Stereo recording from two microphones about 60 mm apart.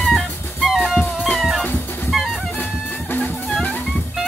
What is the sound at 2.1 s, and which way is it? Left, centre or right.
Music, centre.